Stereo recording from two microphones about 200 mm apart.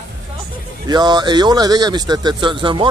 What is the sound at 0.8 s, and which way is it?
Speech, 20° right (ahead or behind).